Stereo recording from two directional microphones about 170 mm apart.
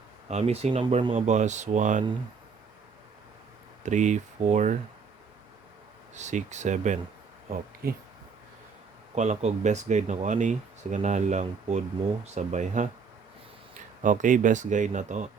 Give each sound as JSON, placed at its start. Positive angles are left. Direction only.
{"t": 0.3, "sound": "speech", "side_deg": -40}
{"t": 3.8, "sound": "speech", "side_deg": -45}
{"t": 6.1, "sound": "speech", "side_deg": -45}
{"t": 9.1, "sound": "speech", "side_deg": -45}
{"t": 14.0, "sound": "speech", "side_deg": -50}